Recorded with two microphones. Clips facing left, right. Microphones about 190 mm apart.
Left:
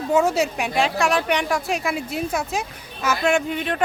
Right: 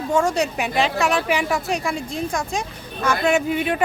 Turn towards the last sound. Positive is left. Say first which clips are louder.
# right 2 dB
turn(degrees=-5)  # may be behind; listen again after turning